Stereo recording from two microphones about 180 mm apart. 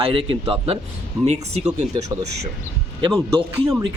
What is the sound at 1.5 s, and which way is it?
Speech, 35° right (ahead or behind).